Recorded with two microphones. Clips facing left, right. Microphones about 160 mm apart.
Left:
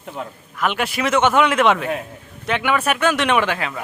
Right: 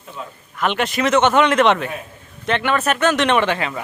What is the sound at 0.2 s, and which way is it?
Speech, 65° left (ahead or behind).